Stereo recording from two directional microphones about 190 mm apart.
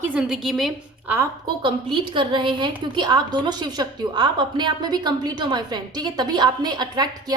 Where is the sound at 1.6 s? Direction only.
25° right (ahead or behind).